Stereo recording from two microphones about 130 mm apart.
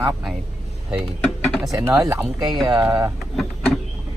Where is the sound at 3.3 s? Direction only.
Centre (ahead or behind).